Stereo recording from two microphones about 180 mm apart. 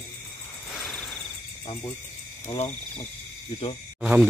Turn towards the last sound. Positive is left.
turn(degrees=-5)  # may be behind; listen again after turning